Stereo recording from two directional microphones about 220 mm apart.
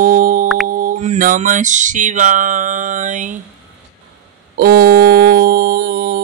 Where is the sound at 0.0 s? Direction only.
40° right (ahead or behind).